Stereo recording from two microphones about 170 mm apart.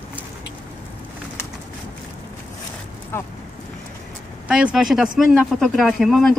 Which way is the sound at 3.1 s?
15° left (ahead or behind).